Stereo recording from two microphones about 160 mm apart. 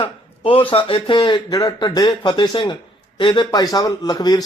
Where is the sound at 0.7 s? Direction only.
35° left (ahead or behind).